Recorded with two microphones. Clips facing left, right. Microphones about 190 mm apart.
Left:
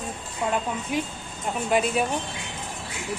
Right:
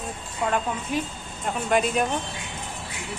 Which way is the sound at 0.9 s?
10° left (ahead or behind).